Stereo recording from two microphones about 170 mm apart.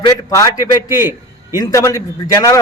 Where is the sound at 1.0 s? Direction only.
15° right (ahead or behind).